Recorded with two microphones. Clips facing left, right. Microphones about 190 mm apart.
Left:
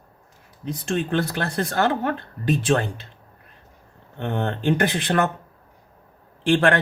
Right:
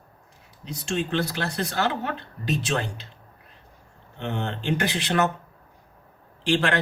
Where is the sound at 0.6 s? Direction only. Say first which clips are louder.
Left 3 dB; 55° left (ahead or behind).